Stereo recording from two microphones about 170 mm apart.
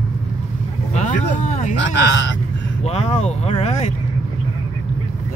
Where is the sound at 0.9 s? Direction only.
45° left (ahead or behind).